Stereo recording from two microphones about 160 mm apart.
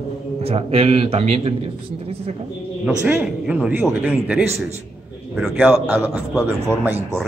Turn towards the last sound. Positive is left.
turn(degrees=-10)  # may be behind; listen again after turning